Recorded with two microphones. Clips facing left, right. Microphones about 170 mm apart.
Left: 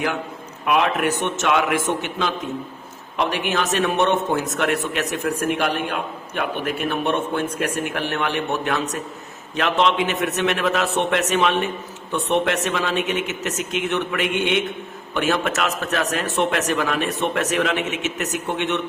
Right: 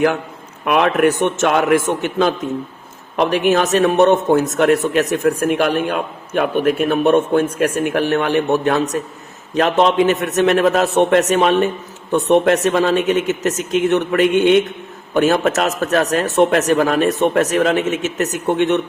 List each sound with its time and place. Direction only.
0.6 s a man's voice: 55° right (ahead or behind)